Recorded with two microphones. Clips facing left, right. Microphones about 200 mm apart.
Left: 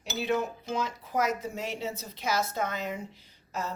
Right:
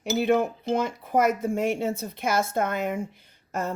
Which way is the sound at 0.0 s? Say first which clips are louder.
Right 7 dB; 55° right (ahead or behind).